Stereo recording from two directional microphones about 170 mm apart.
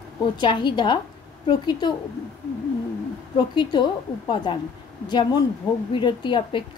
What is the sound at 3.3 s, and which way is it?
A woman's voice, 25° left (ahead or behind).